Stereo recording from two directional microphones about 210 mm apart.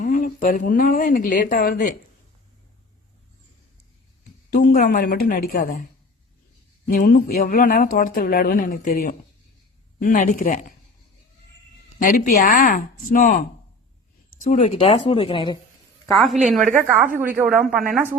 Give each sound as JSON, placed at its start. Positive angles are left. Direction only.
{"t": 0.0, "sound": "speech", "side_deg": 40}
{"t": 4.5, "sound": "speech", "side_deg": 45}
{"t": 6.8, "sound": "speech", "side_deg": 45}
{"t": 11.9, "sound": "speech", "side_deg": 40}
{"t": 14.4, "sound": "speech", "side_deg": 35}
{"t": 16.0, "sound": "a woman's voice", "side_deg": 0}
{"t": 16.6, "sound": "a woman's voice", "side_deg": -40}
{"t": 17.2, "sound": "a woman's voice", "side_deg": -10}